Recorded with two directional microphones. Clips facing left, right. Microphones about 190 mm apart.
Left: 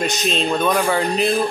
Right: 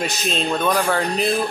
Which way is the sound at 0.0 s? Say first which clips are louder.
Left 2 dB; centre (ahead or behind).